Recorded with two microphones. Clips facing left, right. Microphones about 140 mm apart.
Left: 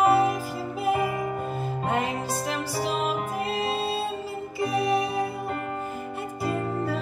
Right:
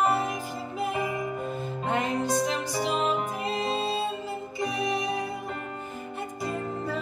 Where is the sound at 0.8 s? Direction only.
5° left (ahead or behind).